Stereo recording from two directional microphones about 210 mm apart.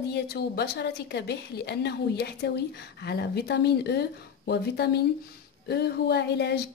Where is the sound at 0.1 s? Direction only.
50° left (ahead or behind).